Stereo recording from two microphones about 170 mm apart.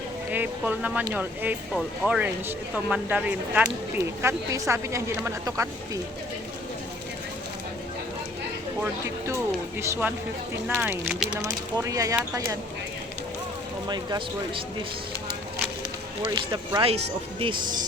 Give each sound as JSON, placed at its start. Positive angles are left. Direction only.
{"t": 0.3, "sound": "speech", "side_deg": -10}
{"t": 8.8, "sound": "speech", "side_deg": -15}
{"t": 13.8, "sound": "speech", "side_deg": -25}
{"t": 16.2, "sound": "speech", "side_deg": -20}